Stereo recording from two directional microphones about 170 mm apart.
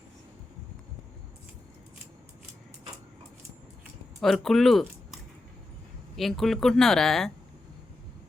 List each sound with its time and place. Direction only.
4.2 s speech: centre (ahead or behind)